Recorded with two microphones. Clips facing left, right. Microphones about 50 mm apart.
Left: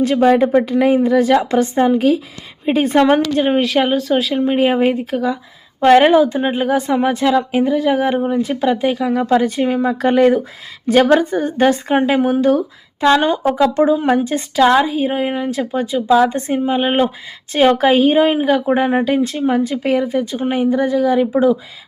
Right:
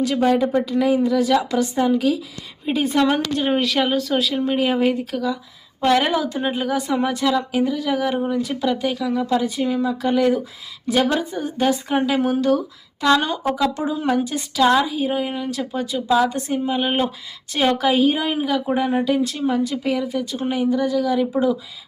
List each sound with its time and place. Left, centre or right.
0.0 s speech: left
3.1 s speech: left
9.1 s a woman's voice: left
12.2 s speech: left